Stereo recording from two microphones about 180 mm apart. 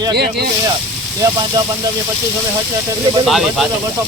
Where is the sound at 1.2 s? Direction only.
20° right (ahead or behind).